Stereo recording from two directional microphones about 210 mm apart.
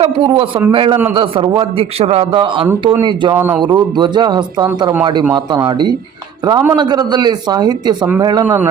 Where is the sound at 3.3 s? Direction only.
10° right (ahead or behind).